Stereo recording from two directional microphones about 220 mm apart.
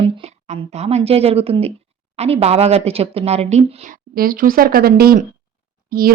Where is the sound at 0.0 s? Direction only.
30° right (ahead or behind).